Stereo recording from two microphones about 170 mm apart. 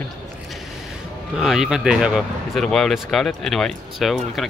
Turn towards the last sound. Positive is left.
turn(degrees=0)  # may be behind; listen again after turning